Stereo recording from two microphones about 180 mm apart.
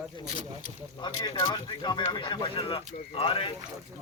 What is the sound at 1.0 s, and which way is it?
Speech, 25° left (ahead or behind).